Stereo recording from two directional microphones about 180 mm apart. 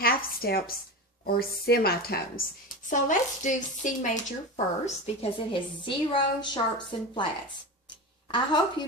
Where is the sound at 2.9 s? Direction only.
45° left (ahead or behind).